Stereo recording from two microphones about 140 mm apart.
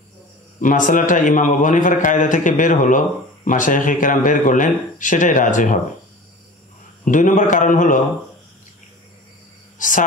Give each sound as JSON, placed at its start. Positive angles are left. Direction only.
{"t": 0.6, "sound": "a man's voice", "side_deg": 70}
{"t": 7.1, "sound": "a man's voice", "side_deg": 65}
{"t": 9.8, "sound": "whispering", "side_deg": 65}